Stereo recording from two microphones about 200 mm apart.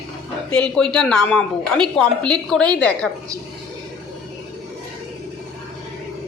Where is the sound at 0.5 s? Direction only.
5° left (ahead or behind).